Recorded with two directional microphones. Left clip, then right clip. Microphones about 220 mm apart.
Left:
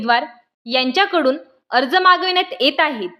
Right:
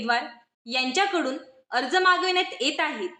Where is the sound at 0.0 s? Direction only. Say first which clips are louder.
Left 8 dB; 45° left (ahead or behind).